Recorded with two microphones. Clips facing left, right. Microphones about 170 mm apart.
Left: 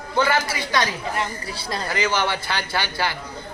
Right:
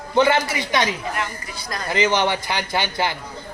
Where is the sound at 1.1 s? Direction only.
30° left (ahead or behind).